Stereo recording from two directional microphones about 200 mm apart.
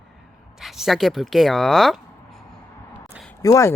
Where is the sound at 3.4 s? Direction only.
15° left (ahead or behind).